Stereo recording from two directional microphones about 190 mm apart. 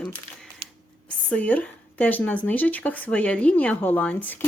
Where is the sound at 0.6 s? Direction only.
30° right (ahead or behind).